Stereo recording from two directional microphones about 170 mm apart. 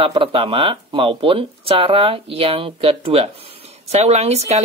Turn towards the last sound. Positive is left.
turn(degrees=-40)  # may be behind; listen again after turning